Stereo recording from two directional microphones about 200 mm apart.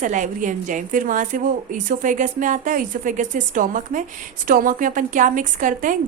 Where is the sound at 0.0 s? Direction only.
40° right (ahead or behind).